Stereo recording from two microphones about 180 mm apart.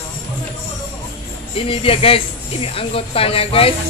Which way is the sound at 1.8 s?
30° left (ahead or behind).